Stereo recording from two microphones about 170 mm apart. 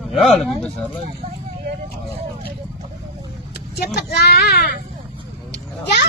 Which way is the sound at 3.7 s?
70° left (ahead or behind).